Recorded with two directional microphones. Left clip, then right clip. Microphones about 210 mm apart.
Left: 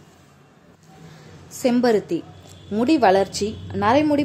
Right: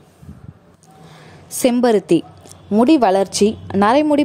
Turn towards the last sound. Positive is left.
turn(degrees=-35)  # may be behind; listen again after turning